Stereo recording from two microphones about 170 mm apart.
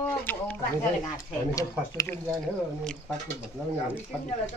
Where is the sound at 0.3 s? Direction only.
10° left (ahead or behind).